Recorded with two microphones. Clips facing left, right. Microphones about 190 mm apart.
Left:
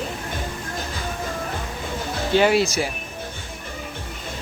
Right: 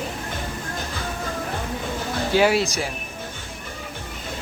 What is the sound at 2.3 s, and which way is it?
Snicker, 5° right (ahead or behind).